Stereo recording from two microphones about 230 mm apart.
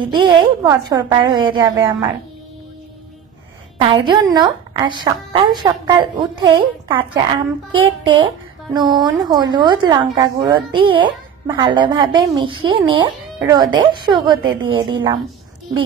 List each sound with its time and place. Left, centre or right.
0.1 s a woman's voice: centre
3.8 s a woman's voice: right